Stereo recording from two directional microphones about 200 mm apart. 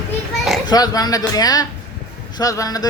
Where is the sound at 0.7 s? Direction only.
20° left (ahead or behind).